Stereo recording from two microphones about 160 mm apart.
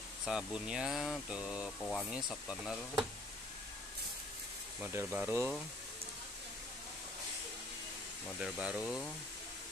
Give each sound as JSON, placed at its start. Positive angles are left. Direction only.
{"t": 0.2, "sound": "speech", "side_deg": -5}
{"t": 4.7, "sound": "speech", "side_deg": -10}
{"t": 8.4, "sound": "speech", "side_deg": -5}